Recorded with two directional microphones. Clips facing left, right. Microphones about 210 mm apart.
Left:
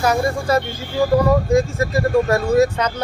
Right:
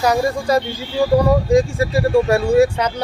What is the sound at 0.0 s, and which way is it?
Speech, 15° right (ahead or behind).